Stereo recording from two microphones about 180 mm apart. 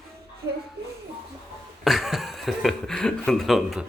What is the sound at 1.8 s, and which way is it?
Speech, centre (ahead or behind).